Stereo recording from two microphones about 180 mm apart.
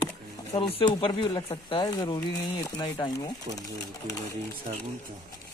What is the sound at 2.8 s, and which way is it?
Speech, 25° left (ahead or behind).